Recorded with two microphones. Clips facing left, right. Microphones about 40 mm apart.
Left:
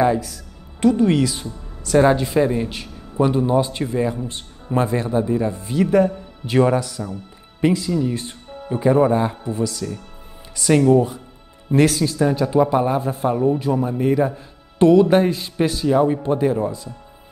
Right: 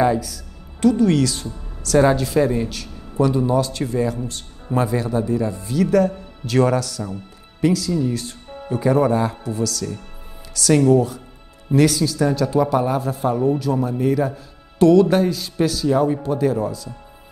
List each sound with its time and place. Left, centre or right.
0.2 s a man's voice: left
5.7 s a man's voice: left
11.7 s speech: left
12.2 s a man's voice: left